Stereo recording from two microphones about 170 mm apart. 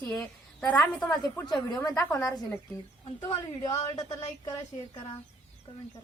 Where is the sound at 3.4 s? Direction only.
20° left (ahead or behind).